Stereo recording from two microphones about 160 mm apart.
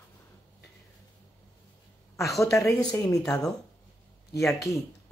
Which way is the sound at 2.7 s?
5° left (ahead or behind).